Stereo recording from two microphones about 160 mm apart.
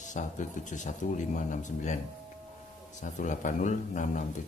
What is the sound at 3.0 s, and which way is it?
Speech, 50° left (ahead or behind).